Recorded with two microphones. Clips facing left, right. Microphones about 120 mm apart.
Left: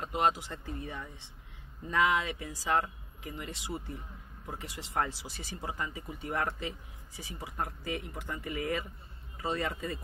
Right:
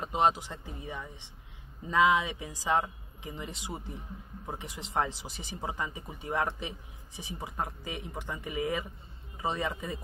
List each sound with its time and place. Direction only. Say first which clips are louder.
0.0 s speech: right 2 dB; 20° right (ahead or behind)